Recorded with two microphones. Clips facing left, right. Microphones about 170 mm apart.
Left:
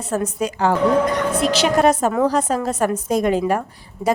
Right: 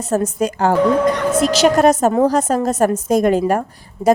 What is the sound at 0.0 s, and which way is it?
A woman's voice, 40° right (ahead or behind).